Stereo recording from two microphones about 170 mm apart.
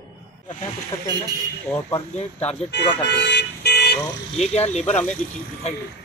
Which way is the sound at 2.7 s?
90° left.